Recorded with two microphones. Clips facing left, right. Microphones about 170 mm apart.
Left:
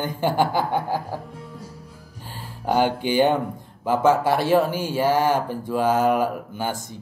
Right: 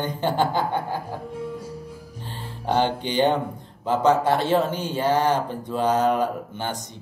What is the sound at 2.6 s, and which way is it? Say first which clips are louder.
Speech: left 2 dB; 10° left (ahead or behind).